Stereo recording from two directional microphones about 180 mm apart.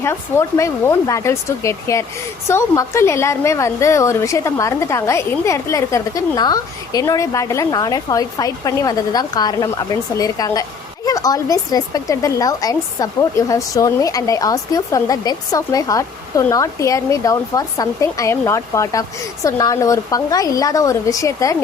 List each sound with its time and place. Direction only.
0.0 s a woman's voice: 15° left (ahead or behind)